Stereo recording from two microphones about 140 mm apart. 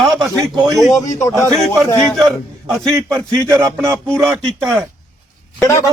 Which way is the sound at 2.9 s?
20° right (ahead or behind).